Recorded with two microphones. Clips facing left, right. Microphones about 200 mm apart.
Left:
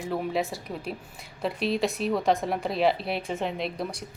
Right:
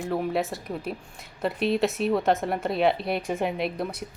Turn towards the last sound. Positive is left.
turn(degrees=-5)  # may be behind; listen again after turning